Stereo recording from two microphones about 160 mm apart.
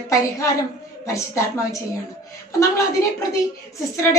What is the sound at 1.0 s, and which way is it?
Speech, 20° left (ahead or behind).